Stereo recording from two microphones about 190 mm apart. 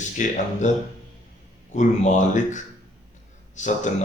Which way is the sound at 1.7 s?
40° left (ahead or behind).